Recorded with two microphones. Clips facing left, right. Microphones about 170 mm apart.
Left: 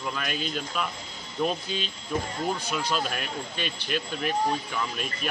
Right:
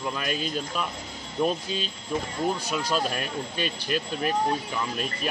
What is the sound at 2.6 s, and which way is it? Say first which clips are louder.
Speech: right 2 dB; 40° right (ahead or behind).